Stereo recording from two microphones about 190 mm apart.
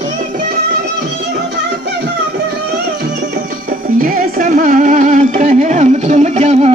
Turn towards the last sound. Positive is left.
turn(degrees=-35)  # may be behind; listen again after turning